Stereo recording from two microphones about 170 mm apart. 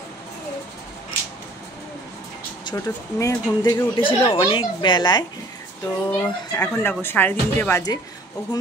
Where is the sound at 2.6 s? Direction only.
20° left (ahead or behind).